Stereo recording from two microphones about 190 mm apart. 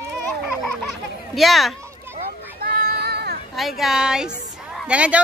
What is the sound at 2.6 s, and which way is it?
Child singing, 55° right (ahead or behind).